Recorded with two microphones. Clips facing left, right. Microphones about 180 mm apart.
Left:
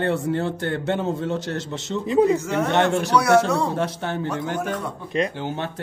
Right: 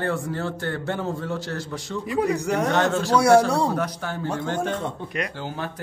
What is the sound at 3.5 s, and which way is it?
Speech, 30° right (ahead or behind).